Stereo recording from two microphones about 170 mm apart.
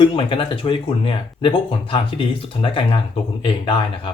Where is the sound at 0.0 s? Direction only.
30° left (ahead or behind).